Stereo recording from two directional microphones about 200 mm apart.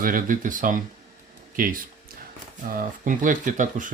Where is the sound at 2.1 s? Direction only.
45° right (ahead or behind).